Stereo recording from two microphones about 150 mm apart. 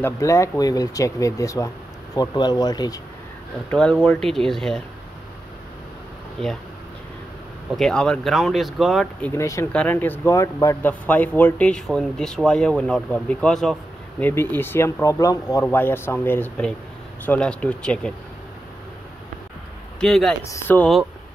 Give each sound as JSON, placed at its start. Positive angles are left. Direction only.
{"t": 0.0, "sound": "speech", "side_deg": 20}
{"t": 3.7, "sound": "speech", "side_deg": 5}
{"t": 7.7, "sound": "speech", "side_deg": 5}
{"t": 9.4, "sound": "speech", "side_deg": 20}
{"t": 9.7, "sound": "speech", "side_deg": 10}
{"t": 14.2, "sound": "speech", "side_deg": 15}
{"t": 20.0, "sound": "speech", "side_deg": 5}
{"t": 20.4, "sound": "speech", "side_deg": 15}